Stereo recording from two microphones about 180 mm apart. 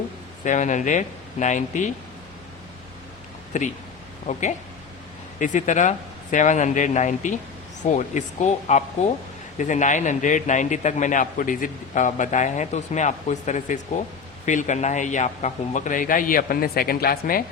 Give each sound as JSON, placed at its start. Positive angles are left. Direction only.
{"t": 0.4, "sound": "a man's voice", "side_deg": 45}
{"t": 3.5, "sound": "a man's voice", "side_deg": 40}